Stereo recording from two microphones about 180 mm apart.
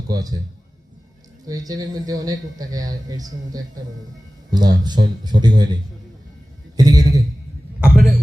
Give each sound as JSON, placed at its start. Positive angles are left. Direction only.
{"t": 0.1, "sound": "speech", "side_deg": -20}
{"t": 1.5, "sound": "speech", "side_deg": -20}
{"t": 6.7, "sound": "a man's voice", "side_deg": -20}
{"t": 7.9, "sound": "a sound", "side_deg": 5}